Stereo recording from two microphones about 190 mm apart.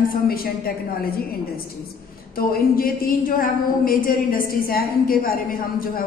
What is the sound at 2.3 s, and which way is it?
A woman's voice, 50° left (ahead or behind).